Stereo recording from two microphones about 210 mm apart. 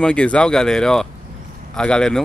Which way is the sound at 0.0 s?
5° left (ahead or behind).